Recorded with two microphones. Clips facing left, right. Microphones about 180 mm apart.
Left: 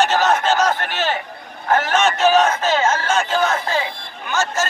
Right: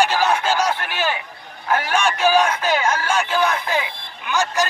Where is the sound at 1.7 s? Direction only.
45° left (ahead or behind).